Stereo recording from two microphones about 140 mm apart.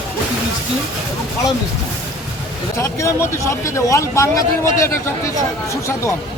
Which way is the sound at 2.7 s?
20° left (ahead or behind).